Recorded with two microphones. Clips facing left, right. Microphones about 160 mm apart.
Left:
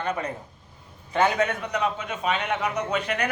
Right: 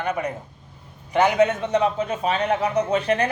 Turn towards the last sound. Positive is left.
turn(degrees=-30)  # may be behind; listen again after turning